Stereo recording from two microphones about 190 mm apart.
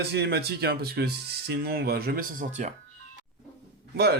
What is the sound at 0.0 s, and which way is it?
Speech, 60° right (ahead or behind).